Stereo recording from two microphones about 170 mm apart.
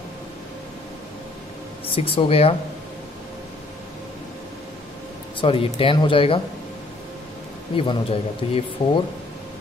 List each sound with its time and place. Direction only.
2.0 s speech: 35° left (ahead or behind)
5.4 s speech: 30° left (ahead or behind)
7.7 s speech: 30° left (ahead or behind)